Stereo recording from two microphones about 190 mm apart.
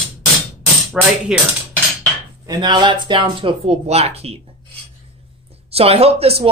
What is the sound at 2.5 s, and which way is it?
Speech, 20° right (ahead or behind).